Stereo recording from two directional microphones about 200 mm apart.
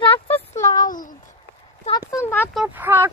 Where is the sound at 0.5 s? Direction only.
15° left (ahead or behind).